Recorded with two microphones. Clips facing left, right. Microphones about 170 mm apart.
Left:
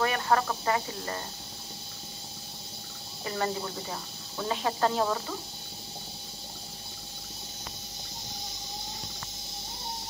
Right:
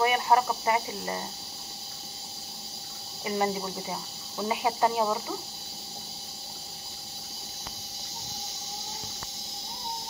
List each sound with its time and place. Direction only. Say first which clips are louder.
0.0 s speech: right 3 dB; 15° right (ahead or behind)
3.3 s speech: right 3 dB; 15° right (ahead or behind)